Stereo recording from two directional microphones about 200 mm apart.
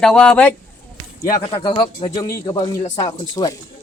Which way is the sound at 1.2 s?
20° left (ahead or behind).